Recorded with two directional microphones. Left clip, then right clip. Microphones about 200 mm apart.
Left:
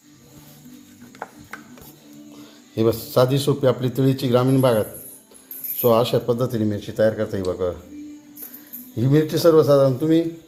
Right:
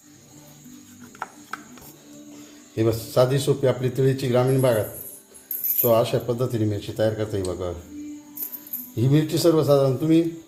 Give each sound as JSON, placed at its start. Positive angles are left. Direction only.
{"t": 2.7, "sound": "speech", "side_deg": 30}
{"t": 5.8, "sound": "speech", "side_deg": 35}
{"t": 9.0, "sound": "speech", "side_deg": 20}